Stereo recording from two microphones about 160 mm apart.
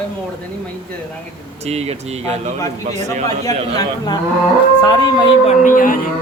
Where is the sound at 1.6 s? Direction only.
40° right (ahead or behind).